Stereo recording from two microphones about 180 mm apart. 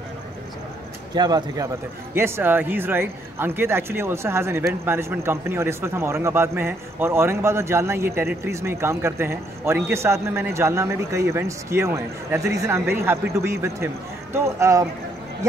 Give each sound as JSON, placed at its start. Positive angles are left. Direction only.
{"t": 1.1, "sound": "a man's voice", "side_deg": -25}
{"t": 2.1, "sound": "speech", "side_deg": -15}